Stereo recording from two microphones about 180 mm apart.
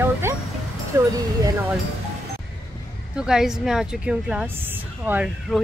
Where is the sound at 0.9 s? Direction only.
20° right (ahead or behind).